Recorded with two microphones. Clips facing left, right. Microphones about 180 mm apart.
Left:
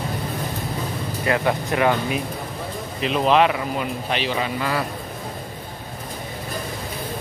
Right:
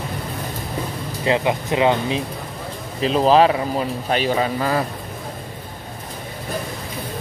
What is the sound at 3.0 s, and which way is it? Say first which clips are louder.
Speech: right 3 dB; 35° right (ahead or behind).